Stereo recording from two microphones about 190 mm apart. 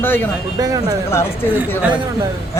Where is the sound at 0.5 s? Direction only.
20° right (ahead or behind).